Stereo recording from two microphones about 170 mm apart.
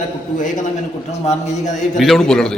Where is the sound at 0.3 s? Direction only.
50° left (ahead or behind).